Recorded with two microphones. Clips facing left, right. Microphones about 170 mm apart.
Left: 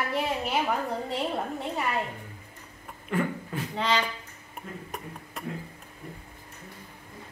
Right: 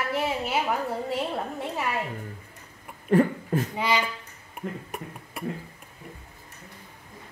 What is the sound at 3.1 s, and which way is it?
Speech, 40° right (ahead or behind).